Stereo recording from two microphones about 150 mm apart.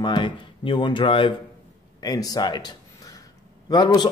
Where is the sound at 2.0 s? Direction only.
25° left (ahead or behind).